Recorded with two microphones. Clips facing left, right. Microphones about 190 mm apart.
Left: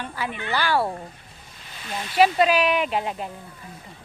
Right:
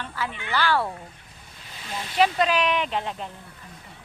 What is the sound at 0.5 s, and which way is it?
Speech, 15° left (ahead or behind).